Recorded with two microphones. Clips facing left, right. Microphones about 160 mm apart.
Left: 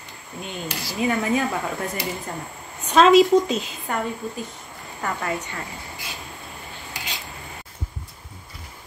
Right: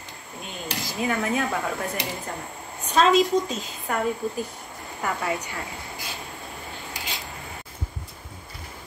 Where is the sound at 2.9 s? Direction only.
75° left (ahead or behind).